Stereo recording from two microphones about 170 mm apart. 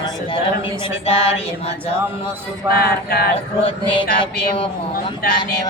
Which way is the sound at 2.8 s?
65° left (ahead or behind).